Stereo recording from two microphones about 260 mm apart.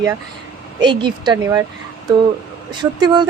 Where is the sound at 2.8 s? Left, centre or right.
Centre.